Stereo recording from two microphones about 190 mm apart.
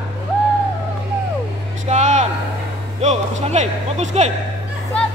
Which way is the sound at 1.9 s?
35° right (ahead or behind).